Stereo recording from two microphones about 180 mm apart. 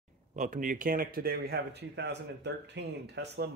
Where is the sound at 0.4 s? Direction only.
45° right (ahead or behind).